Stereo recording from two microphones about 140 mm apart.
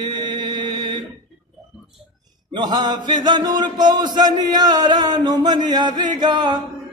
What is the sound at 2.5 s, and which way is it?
Mantra, 30° right (ahead or behind).